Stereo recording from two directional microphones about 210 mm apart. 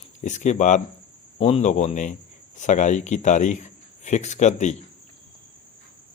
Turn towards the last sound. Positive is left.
turn(degrees=35)  # may be behind; listen again after turning